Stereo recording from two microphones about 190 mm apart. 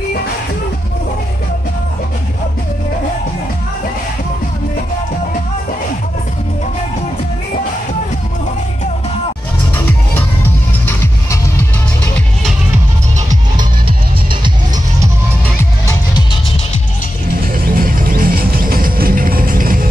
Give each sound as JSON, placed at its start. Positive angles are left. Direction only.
{"t": 9.8, "sound": "music", "side_deg": 10}
{"t": 13.6, "sound": "music", "side_deg": -25}
{"t": 17.7, "sound": "music", "side_deg": -50}